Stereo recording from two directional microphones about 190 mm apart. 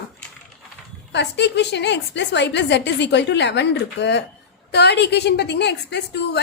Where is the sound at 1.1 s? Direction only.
65° left (ahead or behind).